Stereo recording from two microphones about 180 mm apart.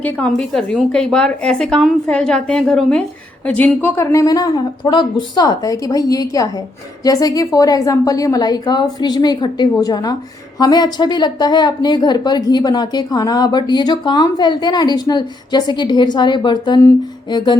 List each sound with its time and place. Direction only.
0.0 s a woman's voice: 5° left (ahead or behind); by 17.6 s 25° left (ahead or behind)